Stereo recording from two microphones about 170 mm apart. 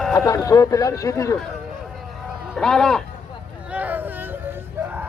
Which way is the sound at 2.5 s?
5° left (ahead or behind).